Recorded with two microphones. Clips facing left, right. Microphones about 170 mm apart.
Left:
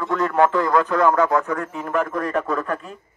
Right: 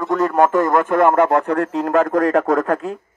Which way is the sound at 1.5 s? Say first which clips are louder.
Right 7 dB; 75° right (ahead or behind).